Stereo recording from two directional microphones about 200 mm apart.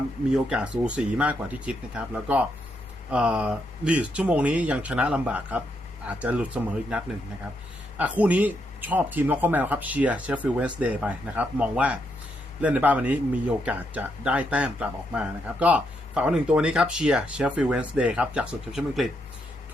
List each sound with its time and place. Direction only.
0.3 s speech: 5° right (ahead or behind)